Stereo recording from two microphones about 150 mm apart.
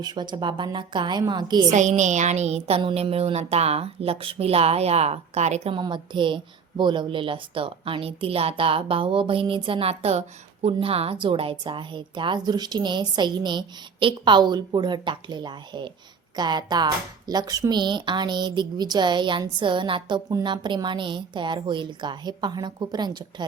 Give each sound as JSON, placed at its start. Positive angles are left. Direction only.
{"t": 0.0, "sound": "speech", "side_deg": -30}
{"t": 1.7, "sound": "speech", "side_deg": -55}
{"t": 5.7, "sound": "speech", "side_deg": -30}